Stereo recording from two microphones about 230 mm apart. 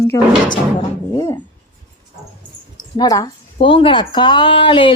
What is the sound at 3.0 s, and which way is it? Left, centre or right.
A woman's voice, centre.